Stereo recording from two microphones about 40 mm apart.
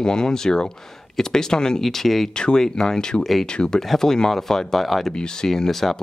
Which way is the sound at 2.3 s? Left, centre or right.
Left.